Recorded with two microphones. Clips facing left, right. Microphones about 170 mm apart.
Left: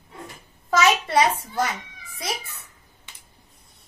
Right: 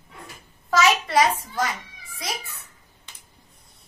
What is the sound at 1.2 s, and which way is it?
Speech, 20° left (ahead or behind).